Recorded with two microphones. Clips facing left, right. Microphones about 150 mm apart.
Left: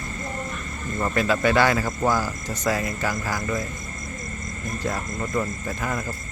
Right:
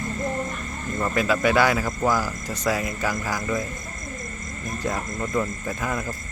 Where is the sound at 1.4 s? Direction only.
10° right (ahead or behind).